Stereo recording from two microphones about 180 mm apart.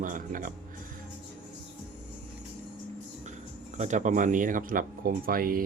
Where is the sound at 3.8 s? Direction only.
40° right (ahead or behind).